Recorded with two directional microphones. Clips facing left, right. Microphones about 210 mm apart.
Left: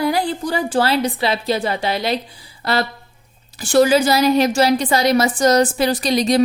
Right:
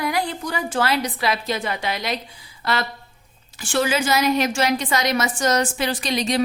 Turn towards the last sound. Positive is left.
turn(degrees=35)  # may be behind; listen again after turning